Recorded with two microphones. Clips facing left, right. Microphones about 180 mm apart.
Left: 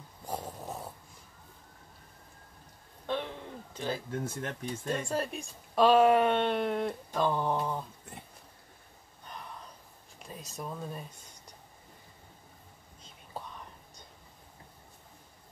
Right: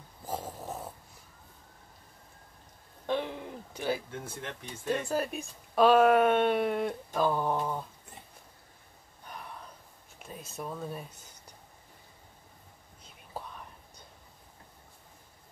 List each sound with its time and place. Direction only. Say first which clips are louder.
0.2 s dog: right 1 dB; centre (ahead or behind)
3.1 s a sound: right 3 dB; 15° right (ahead or behind)
4.1 s speech: left 5 dB; 45° left (ahead or behind)
4.8 s speech: right 3 dB; 5° right (ahead or behind)
10.1 s speech: right 1 dB; 5° right (ahead or behind)